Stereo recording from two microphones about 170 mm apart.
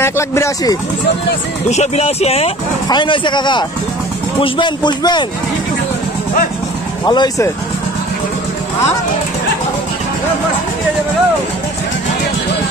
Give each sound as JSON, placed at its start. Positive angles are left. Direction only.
{"t": 0.0, "sound": "speech", "side_deg": 15}
{"t": 1.7, "sound": "a man's voice", "side_deg": 40}
{"t": 7.1, "sound": "a man's voice", "side_deg": 20}